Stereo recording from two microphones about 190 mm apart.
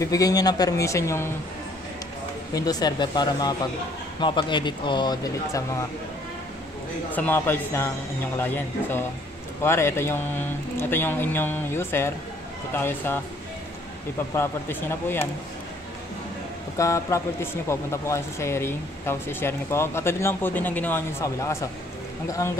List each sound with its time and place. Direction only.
0.0 s speech: 20° left (ahead or behind)
2.5 s speech: 20° left (ahead or behind)
7.1 s speech: 10° left (ahead or behind)
14.3 s speech: 10° left (ahead or behind)
16.7 s speech: 15° left (ahead or behind)